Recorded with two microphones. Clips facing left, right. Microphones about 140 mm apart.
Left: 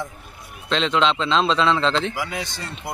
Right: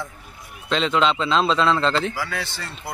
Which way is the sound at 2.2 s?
15° left (ahead or behind).